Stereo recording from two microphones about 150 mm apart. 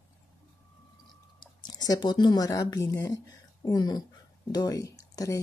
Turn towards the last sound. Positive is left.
turn(degrees=20)  # may be behind; listen again after turning